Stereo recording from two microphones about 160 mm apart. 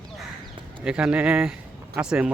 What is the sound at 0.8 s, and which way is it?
Speech, 5° right (ahead or behind).